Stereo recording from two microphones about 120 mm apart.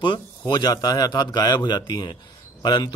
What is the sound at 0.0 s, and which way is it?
A man's voice, 40° left (ahead or behind).